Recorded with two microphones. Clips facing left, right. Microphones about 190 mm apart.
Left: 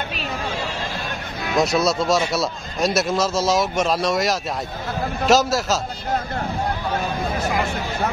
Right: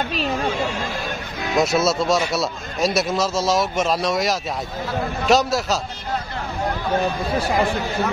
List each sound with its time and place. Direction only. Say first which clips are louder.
1.5 s a man's voice: even; centre (ahead or behind)
7.3 s speech: right 5 dB; 35° right (ahead or behind)